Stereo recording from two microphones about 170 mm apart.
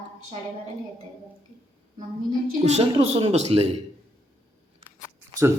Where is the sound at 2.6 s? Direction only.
40° right (ahead or behind).